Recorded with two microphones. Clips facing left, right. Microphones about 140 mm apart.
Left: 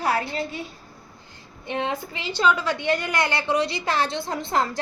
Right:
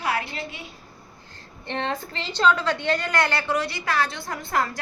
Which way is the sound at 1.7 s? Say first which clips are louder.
Left 1 dB; 10° left (ahead or behind).